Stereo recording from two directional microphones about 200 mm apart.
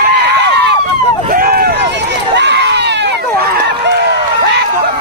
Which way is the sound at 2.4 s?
60° right (ahead or behind).